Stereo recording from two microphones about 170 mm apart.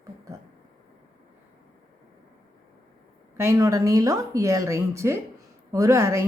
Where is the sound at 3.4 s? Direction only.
20° right (ahead or behind).